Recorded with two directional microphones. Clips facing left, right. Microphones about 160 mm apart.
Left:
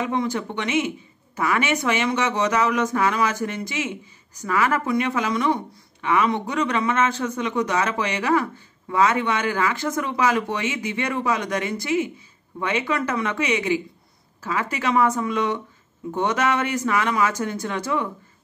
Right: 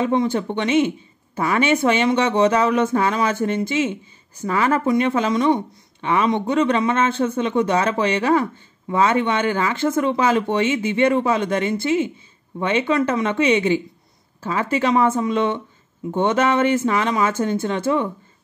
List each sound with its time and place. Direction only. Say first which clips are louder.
0.0 s speech: right 5 dB; 25° right (ahead or behind)